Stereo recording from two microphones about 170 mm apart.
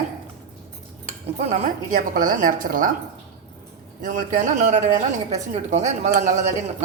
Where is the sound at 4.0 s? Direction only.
50° right (ahead or behind).